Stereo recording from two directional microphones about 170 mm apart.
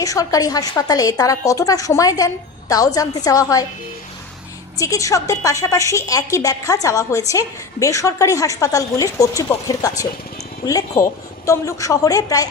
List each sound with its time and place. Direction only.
0.0 s a woman's voice: 20° left (ahead or behind)
4.8 s a woman's voice: 20° left (ahead or behind)